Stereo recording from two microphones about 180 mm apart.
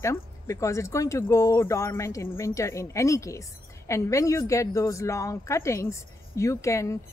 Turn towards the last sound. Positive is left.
turn(degrees=15)  # may be behind; listen again after turning